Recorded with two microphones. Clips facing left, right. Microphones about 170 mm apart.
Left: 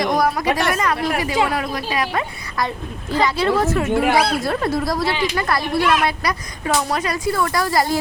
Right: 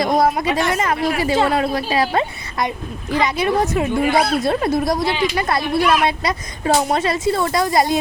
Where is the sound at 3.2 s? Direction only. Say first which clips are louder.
Left 1 dB; 20° right (ahead or behind).